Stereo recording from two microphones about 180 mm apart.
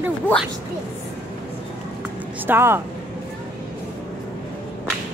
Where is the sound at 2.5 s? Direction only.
15° right (ahead or behind).